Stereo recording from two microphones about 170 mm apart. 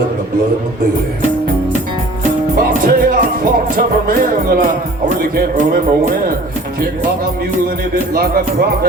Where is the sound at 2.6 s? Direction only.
55° right (ahead or behind).